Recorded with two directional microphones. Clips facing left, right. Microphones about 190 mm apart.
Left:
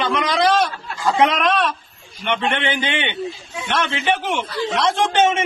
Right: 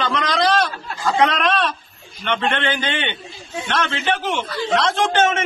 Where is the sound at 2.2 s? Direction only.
15° left (ahead or behind).